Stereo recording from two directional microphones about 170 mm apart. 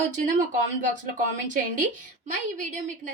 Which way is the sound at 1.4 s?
50° right (ahead or behind).